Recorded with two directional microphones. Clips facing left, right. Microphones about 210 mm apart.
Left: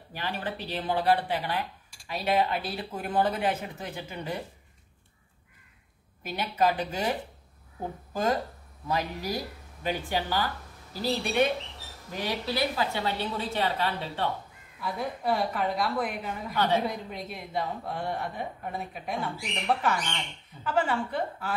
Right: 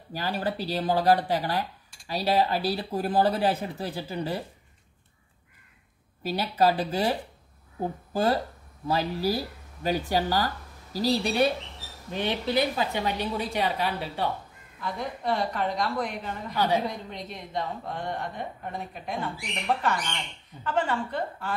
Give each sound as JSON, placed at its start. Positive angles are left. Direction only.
{"t": 0.1, "sound": "speech", "side_deg": -35}
{"t": 6.2, "sound": "speech", "side_deg": -35}
{"t": 12.1, "sound": "a woman's voice", "side_deg": -25}
{"t": 14.8, "sound": "a woman's voice", "side_deg": 5}
{"t": 16.5, "sound": "a woman's voice", "side_deg": -10}
{"t": 16.8, "sound": "a woman's voice", "side_deg": 5}